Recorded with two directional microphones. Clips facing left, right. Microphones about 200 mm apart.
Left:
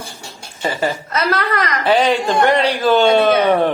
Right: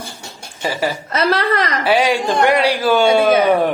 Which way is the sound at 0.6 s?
10° right (ahead or behind).